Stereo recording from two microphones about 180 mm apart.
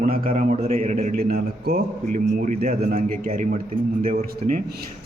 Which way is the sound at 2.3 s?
40° right (ahead or behind).